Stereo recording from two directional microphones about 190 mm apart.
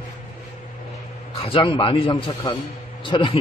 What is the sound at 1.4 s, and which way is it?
A man's voice, 30° left (ahead or behind).